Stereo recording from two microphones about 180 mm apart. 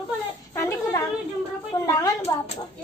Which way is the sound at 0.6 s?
15° left (ahead or behind).